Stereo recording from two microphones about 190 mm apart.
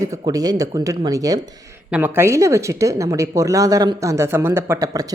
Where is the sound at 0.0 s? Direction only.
20° right (ahead or behind).